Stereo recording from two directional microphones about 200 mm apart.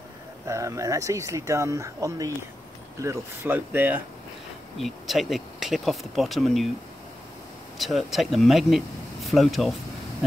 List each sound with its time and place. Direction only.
0.5 s speech: 15° right (ahead or behind); by 6.7 s centre (ahead or behind)
7.8 s speech: centre (ahead or behind)